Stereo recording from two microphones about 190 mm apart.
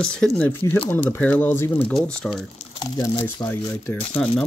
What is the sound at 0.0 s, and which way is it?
Speech, 5° left (ahead or behind).